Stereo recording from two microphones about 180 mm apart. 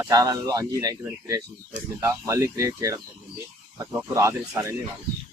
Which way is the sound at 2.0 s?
15° right (ahead or behind).